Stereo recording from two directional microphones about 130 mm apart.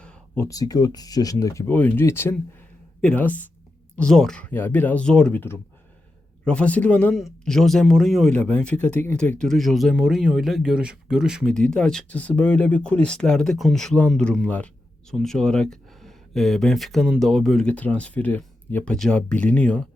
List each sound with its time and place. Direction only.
0.0 s a sound: 5° left (ahead or behind)
0.4 s speech: 30° left (ahead or behind)
9.4 s speech: 5° left (ahead or behind)